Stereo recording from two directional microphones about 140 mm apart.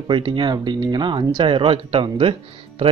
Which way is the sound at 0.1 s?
35° right (ahead or behind).